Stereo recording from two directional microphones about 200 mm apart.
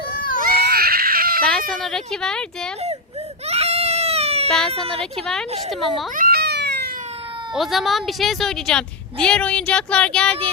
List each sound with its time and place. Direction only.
0.3 s baby cry: 50° right (ahead or behind)
1.5 s speech: centre (ahead or behind)
3.4 s goat: 30° right (ahead or behind)
5.2 s speech: 5° left (ahead or behind)
6.1 s cat: 50° right (ahead or behind)
7.5 s speech: centre (ahead or behind)